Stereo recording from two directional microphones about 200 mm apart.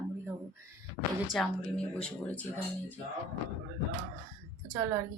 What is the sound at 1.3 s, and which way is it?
Speech, 5° left (ahead or behind).